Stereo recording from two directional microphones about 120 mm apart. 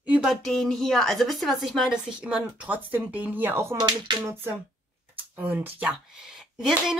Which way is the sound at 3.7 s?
40° right (ahead or behind).